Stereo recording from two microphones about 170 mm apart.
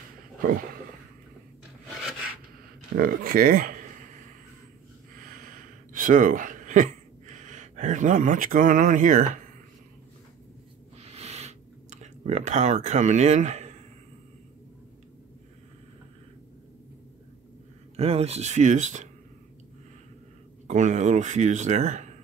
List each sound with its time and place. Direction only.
0.4 s speech: 60° right (ahead or behind)
3.0 s speech: 60° right (ahead or behind)
5.2 s a sound: 55° right (ahead or behind)
11.0 s a sound: 40° right (ahead or behind)
17.9 s speech: 35° right (ahead or behind)
20.6 s speech: 45° right (ahead or behind)